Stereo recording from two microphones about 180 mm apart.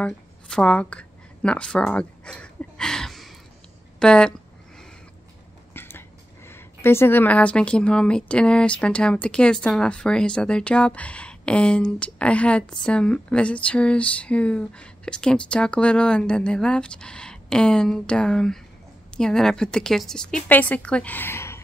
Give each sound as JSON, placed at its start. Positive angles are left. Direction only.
{"t": 0.0, "sound": "a sound", "side_deg": 5}
{"t": 4.0, "sound": "speech", "side_deg": 5}
{"t": 5.7, "sound": "a woman's voice", "side_deg": 10}